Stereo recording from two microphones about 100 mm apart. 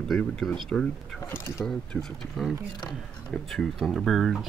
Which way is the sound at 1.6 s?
5° left (ahead or behind).